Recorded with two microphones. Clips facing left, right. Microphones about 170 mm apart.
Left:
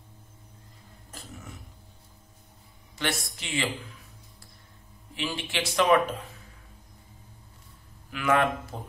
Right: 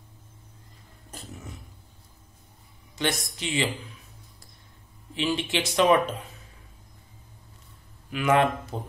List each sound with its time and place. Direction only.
3.0 s speech: 20° right (ahead or behind)
5.1 s speech: 20° right (ahead or behind)
8.1 s speech: 20° right (ahead or behind)